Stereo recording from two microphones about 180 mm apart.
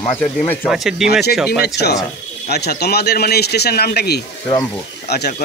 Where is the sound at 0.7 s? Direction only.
5° right (ahead or behind).